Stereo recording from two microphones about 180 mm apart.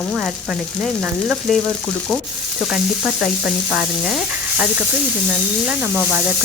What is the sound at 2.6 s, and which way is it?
Frying, centre (ahead or behind).